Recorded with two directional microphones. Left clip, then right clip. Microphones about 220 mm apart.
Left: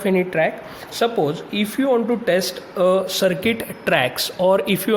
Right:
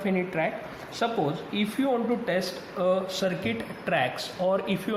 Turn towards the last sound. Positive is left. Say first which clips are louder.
# left 9 dB
turn(degrees=50)  # may be behind; listen again after turning